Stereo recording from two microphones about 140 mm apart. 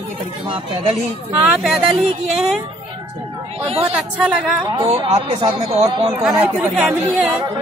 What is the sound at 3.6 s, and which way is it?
Speech, 45° right (ahead or behind).